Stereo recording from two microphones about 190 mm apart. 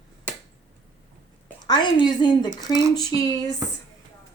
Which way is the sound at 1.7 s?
20° left (ahead or behind).